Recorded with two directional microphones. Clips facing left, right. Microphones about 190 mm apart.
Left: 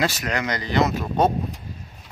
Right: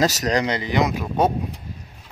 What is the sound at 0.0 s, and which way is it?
Speech, 40° right (ahead or behind).